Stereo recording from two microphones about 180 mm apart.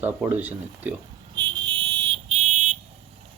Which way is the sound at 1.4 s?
25° right (ahead or behind).